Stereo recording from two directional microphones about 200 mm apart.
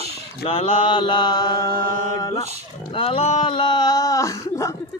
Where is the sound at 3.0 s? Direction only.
30° left (ahead or behind).